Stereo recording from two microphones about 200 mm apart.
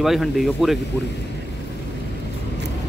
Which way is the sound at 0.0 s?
Centre (ahead or behind).